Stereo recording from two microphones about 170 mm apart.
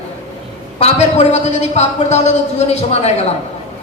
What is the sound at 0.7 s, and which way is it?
A man's voice, 40° left (ahead or behind).